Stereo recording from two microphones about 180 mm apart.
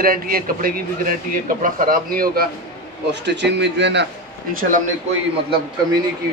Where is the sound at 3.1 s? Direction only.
70° right (ahead or behind).